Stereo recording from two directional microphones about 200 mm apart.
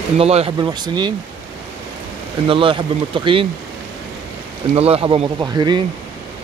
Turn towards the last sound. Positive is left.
turn(degrees=-20)  # may be behind; listen again after turning